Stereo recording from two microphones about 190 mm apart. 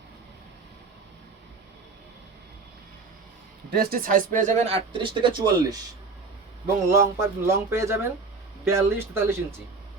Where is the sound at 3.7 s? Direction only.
55° right (ahead or behind); by 5.7 s 20° right (ahead or behind).